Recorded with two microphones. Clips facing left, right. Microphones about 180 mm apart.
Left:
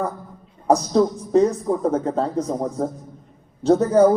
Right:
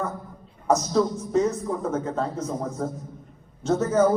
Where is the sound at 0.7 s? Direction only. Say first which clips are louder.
Left 4 dB; 35° left (ahead or behind).